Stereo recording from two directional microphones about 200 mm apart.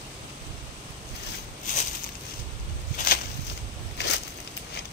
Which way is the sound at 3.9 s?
55° left (ahead or behind).